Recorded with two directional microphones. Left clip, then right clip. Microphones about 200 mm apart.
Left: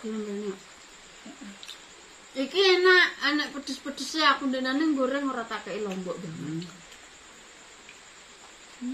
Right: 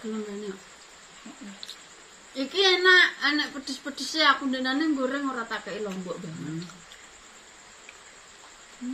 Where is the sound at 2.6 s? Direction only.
15° left (ahead or behind).